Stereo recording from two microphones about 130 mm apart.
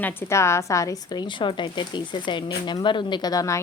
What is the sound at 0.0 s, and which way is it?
Speech, 20° left (ahead or behind).